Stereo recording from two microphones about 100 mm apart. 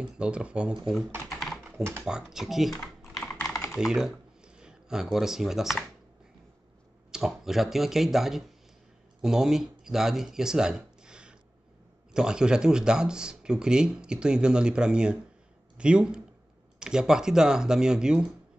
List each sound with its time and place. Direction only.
0.0 s speech: 10° right (ahead or behind)
1.3 s typing: centre (ahead or behind)
1.8 s speech: 25° right (ahead or behind)
2.0 s speech: 5° right (ahead or behind)
2.8 s typing: 5° left (ahead or behind)
3.4 s typing: 30° left (ahead or behind)
3.7 s speech: 5° right (ahead or behind)
7.1 s speech: 5° right (ahead or behind)